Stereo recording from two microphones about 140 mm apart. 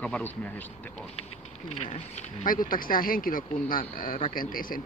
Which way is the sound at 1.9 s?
55° left (ahead or behind).